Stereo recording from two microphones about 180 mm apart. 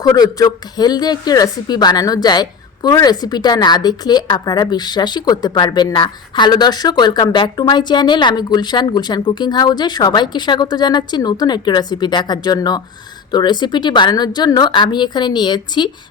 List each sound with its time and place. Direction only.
0.0 s a woman's voice: 20° left (ahead or behind)